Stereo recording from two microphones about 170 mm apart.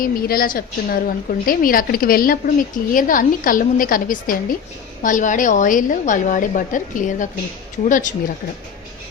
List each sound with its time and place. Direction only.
0.0 s a woman's voice: 60° left (ahead or behind)